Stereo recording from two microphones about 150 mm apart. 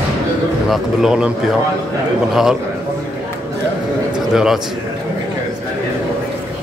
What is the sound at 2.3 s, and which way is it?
Speech, 5° right (ahead or behind).